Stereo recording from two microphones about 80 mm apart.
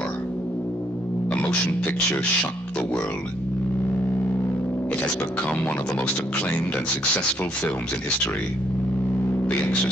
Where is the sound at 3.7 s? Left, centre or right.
Left.